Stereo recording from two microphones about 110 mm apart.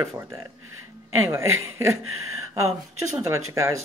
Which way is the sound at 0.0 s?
30° right (ahead or behind).